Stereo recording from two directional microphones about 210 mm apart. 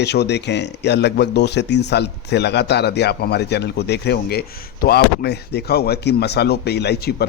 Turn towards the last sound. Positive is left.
turn(degrees=50)  # may be behind; listen again after turning